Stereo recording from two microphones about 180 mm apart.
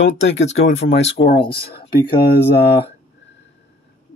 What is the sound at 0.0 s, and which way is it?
Speech, 85° left.